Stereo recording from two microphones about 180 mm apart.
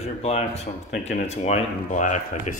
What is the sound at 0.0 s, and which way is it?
Speech, 35° left (ahead or behind).